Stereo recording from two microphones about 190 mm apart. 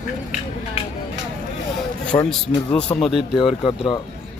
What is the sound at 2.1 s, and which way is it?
Speech, 25° left (ahead or behind).